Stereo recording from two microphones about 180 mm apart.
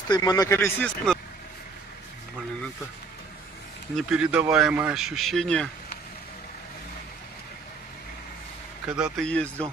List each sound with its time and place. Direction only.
0.1 s speech: 20° left (ahead or behind); by 1.2 s 5° left (ahead or behind)
3.9 s speech: 5° right (ahead or behind)
8.8 s speech: 5° right (ahead or behind)